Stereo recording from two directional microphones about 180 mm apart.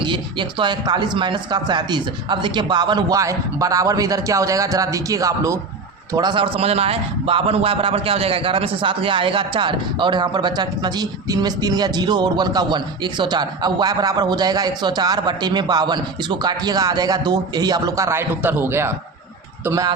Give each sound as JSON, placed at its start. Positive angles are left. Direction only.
{"t": 0.0, "sound": "a man's voice", "side_deg": -25}